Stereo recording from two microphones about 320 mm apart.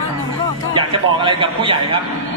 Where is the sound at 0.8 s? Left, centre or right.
Centre.